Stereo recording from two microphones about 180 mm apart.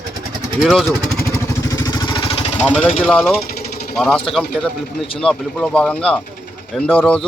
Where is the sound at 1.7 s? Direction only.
20° left (ahead or behind).